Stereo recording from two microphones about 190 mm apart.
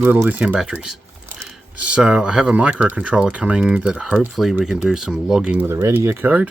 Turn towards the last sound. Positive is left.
turn(degrees=-10)  # may be behind; listen again after turning